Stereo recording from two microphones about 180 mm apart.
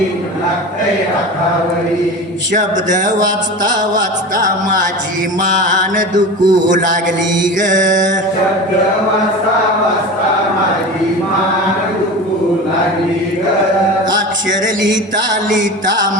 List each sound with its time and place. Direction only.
2.5 s mantra: 45° right (ahead or behind)
3.2 s mantra: 20° right (ahead or behind)
4.4 s mantra: 50° right (ahead or behind)
6.1 s mantra: 20° right (ahead or behind)
7.4 s mantra: 45° right (ahead or behind)